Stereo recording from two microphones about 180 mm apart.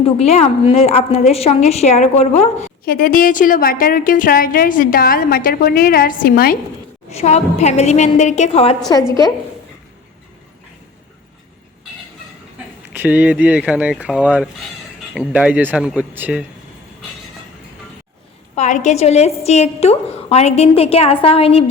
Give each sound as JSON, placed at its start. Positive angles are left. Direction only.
{"t": 0.0, "sound": "a woman's voice", "side_deg": 35}
{"t": 2.8, "sound": "a woman's voice", "side_deg": 55}
{"t": 7.2, "sound": "a woman's voice", "side_deg": 35}
{"t": 12.9, "sound": "speech", "side_deg": -10}
{"t": 18.5, "sound": "a woman's voice", "side_deg": 40}